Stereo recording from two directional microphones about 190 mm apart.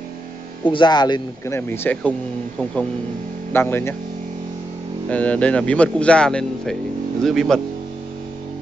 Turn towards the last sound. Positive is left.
turn(degrees=0)  # may be behind; listen again after turning